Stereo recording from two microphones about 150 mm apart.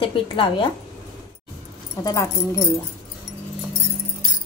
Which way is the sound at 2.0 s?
25° left (ahead or behind).